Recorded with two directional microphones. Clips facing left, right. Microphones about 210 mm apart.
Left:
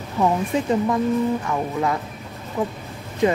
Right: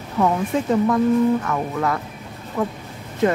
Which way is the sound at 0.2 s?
10° left (ahead or behind).